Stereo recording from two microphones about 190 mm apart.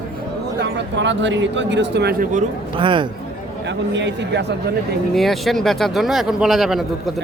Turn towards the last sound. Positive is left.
turn(degrees=0)  # may be behind; listen again after turning